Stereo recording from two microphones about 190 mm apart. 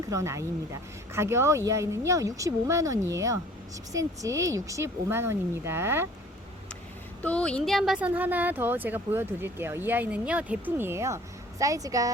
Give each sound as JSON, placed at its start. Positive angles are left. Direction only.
{"t": 0.1, "sound": "speech", "side_deg": -15}
{"t": 7.2, "sound": "speech", "side_deg": 5}